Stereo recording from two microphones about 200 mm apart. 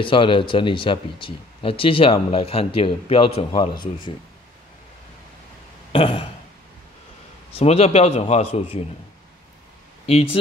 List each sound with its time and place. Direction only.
0.0 s speech: 25° left (ahead or behind)
5.9 s burping: 25° left (ahead or behind)
7.5 s a man's voice: 30° left (ahead or behind)
10.0 s a man's voice: 30° left (ahead or behind)